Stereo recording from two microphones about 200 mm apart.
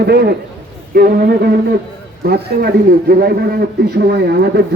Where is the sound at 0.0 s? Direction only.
55° right (ahead or behind).